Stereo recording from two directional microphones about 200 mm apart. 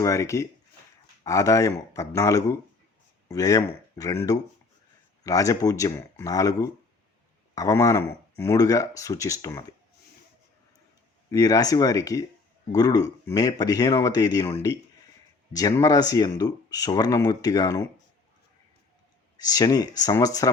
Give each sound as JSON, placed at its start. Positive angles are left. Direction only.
{"t": 0.0, "sound": "speech", "side_deg": 15}
{"t": 11.3, "sound": "speech", "side_deg": 20}
{"t": 15.5, "sound": "speech", "side_deg": 15}
{"t": 19.4, "sound": "speech", "side_deg": 20}